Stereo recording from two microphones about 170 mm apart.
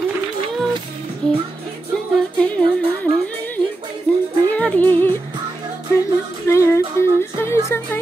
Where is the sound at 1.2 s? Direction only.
5° left (ahead or behind).